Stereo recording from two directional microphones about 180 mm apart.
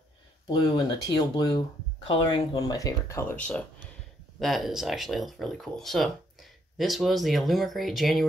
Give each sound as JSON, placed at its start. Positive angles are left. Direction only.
{"t": 0.5, "sound": "speech", "side_deg": 25}